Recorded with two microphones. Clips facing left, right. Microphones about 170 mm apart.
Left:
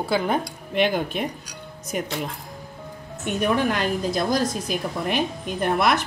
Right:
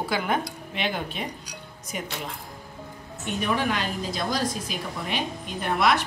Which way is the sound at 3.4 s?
50° left (ahead or behind).